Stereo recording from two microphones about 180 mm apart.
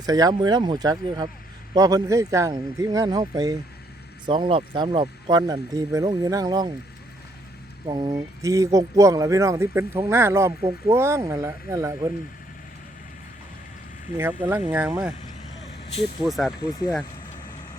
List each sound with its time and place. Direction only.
0.0 s speech: 20° right (ahead or behind)
7.9 s speech: 25° right (ahead or behind)
14.2 s speech: 10° right (ahead or behind)
16.2 s speech: centre (ahead or behind)